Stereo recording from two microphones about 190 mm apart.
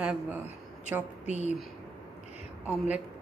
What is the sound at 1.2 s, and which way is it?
Speech, 35° left (ahead or behind).